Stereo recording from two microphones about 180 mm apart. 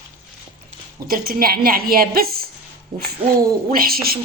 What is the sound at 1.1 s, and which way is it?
Speech, 55° right (ahead or behind).